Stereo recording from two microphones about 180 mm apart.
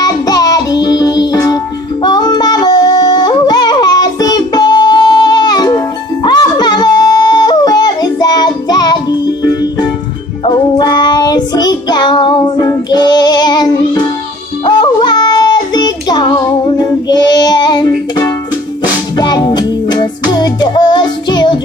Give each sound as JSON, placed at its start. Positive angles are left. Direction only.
{"t": 0.0, "sound": "music", "side_deg": 20}
{"t": 2.0, "sound": "singing", "side_deg": 25}
{"t": 6.2, "sound": "a sound", "side_deg": 25}
{"t": 10.4, "sound": "child singing", "side_deg": 20}
{"t": 19.1, "sound": "music", "side_deg": 25}